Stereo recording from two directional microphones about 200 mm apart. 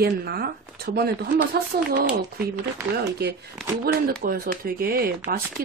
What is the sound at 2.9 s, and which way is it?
Speech, 50° right (ahead or behind).